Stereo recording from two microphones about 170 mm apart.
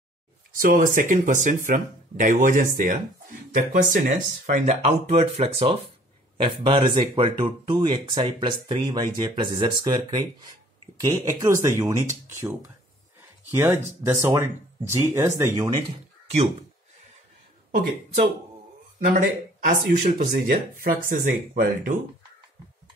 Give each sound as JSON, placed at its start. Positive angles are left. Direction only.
{"t": 0.6, "sound": "speech", "side_deg": -50}
{"t": 18.9, "sound": "speech", "side_deg": -55}